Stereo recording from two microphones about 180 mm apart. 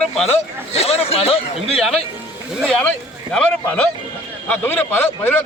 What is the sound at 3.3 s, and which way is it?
A man's voice, 5° left (ahead or behind).